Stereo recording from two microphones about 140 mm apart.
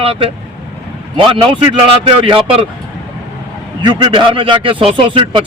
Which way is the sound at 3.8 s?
35° right (ahead or behind).